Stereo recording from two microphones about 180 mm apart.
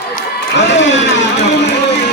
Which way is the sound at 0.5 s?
80° left.